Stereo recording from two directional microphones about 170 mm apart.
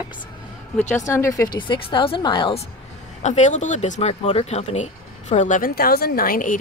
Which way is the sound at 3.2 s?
45° left (ahead or behind).